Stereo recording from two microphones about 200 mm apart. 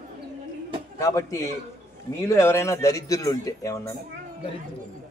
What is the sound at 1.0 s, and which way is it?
Speech, 15° left (ahead or behind).